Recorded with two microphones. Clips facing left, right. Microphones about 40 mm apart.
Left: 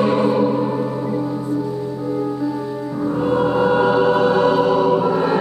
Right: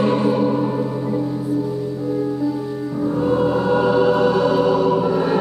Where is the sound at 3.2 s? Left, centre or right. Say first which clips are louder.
Left 2 dB; left.